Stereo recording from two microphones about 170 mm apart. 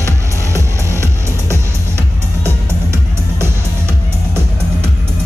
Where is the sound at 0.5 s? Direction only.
15° right (ahead or behind).